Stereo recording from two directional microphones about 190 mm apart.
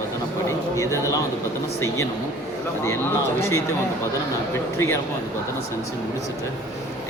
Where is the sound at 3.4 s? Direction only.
15° left (ahead or behind).